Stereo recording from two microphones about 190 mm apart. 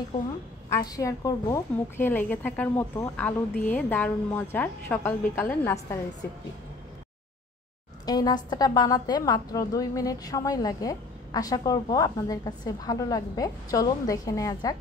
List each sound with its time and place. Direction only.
0.7 s a woman's voice: 20° left (ahead or behind)
8.0 s a woman's voice: 20° left (ahead or behind)